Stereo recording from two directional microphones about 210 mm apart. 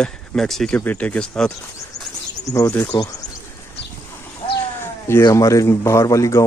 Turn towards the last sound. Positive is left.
turn(degrees=15)  # may be behind; listen again after turning